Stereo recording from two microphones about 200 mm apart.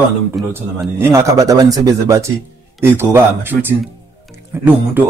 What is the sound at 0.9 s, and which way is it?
Speech, 15° right (ahead or behind).